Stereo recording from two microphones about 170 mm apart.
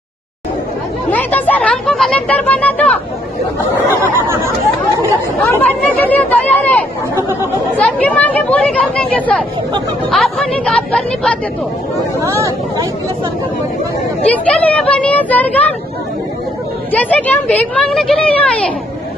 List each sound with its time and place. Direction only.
1.1 s a sound: 10° left (ahead or behind)
5.4 s speech: 10° left (ahead or behind)
7.7 s a woman's voice: 10° left (ahead or behind)
12.3 s speech: 20° right (ahead or behind)
14.2 s a woman's voice: 10° left (ahead or behind)
16.9 s a woman's voice: 10° left (ahead or behind)